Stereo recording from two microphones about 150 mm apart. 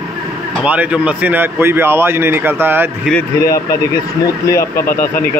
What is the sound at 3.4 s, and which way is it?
Speech, 20° left (ahead or behind).